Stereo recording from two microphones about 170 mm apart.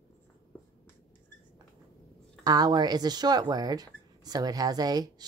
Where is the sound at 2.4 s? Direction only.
25° right (ahead or behind).